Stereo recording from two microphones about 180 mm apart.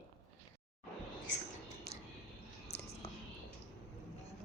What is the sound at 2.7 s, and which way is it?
Whispering, 35° left (ahead or behind).